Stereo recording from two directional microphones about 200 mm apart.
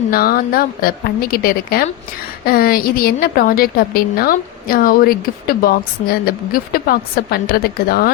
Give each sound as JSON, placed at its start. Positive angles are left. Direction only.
{"t": 0.1, "sound": "a woman's voice", "side_deg": 45}